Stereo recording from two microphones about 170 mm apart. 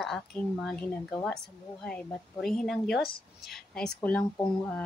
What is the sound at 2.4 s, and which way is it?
Speech, centre (ahead or behind).